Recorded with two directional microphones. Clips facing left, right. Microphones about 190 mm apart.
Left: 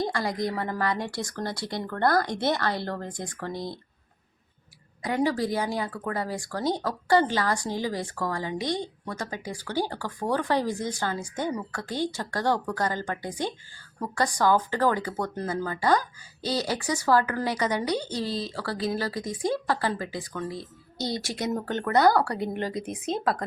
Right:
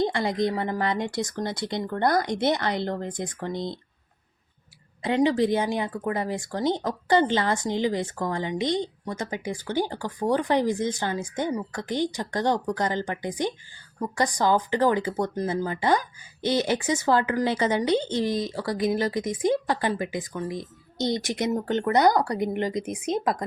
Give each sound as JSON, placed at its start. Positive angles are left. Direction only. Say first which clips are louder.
{"t": 0.0, "sound": "speech", "louder": "right 4 dB", "side_deg": -25}
{"t": 5.0, "sound": "speech", "louder": "right 4 dB", "side_deg": -20}